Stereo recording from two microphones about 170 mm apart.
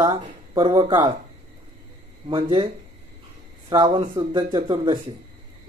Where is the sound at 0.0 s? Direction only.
25° right (ahead or behind).